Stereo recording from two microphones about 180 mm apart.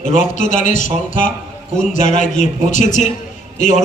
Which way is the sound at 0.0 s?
45° left (ahead or behind).